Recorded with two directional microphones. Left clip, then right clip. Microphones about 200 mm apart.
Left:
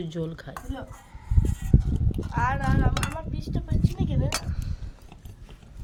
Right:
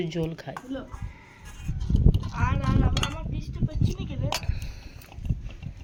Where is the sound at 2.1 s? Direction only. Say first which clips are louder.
Left 5 dB; 20° left (ahead or behind).